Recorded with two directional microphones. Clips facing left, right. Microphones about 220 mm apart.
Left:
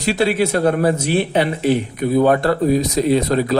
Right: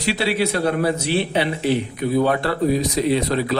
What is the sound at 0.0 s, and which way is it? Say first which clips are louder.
A man's voice: left 4 dB; 45° left (ahead or behind).